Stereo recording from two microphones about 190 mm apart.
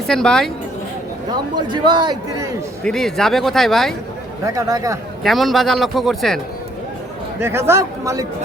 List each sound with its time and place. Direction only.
0.1 s a man's voice: 5° left (ahead or behind)
1.5 s a man's voice: 25° right (ahead or behind)
2.8 s a man's voice: centre (ahead or behind)
4.4 s a man's voice: 20° right (ahead or behind)
5.2 s a man's voice: centre (ahead or behind)
7.3 s a man's voice: 15° right (ahead or behind)